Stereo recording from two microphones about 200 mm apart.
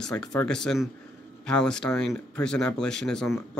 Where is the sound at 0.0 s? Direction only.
5° left (ahead or behind).